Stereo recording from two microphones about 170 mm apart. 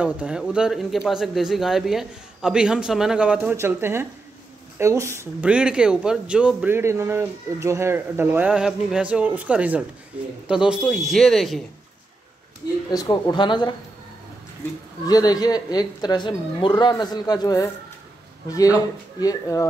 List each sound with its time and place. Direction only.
0.0 s speech: 5° right (ahead or behind)
12.9 s speech: 25° left (ahead or behind)
15.0 s speech: 20° left (ahead or behind)
19.1 s speech: 20° left (ahead or behind)